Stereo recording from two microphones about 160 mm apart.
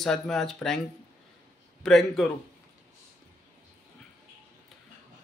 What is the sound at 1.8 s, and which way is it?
Speech, centre (ahead or behind).